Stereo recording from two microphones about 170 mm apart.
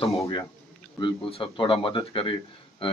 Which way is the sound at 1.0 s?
30° left (ahead or behind).